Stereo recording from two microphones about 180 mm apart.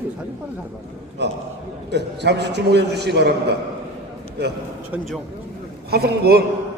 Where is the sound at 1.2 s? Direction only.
70° right (ahead or behind).